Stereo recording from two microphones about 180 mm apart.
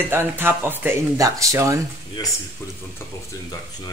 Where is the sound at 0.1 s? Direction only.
10° right (ahead or behind).